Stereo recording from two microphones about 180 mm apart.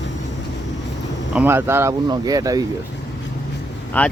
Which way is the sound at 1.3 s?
10° right (ahead or behind).